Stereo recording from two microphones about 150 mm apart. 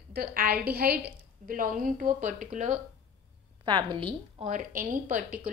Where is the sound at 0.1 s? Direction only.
80° right; by 2.8 s 55° right (ahead or behind).